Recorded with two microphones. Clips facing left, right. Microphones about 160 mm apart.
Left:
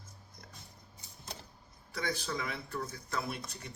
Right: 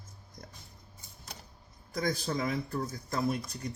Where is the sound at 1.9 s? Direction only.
40° right (ahead or behind).